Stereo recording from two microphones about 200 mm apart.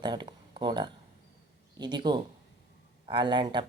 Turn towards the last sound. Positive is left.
turn(degrees=-25)  # may be behind; listen again after turning